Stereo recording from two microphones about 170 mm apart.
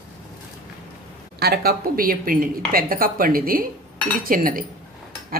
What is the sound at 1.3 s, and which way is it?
A woman's voice, 70° right (ahead or behind).